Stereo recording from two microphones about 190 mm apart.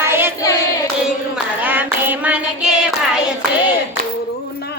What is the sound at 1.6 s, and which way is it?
Hands, 10° right (ahead or behind).